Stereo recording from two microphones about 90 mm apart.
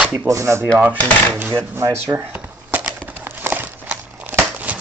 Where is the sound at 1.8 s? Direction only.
35° right (ahead or behind).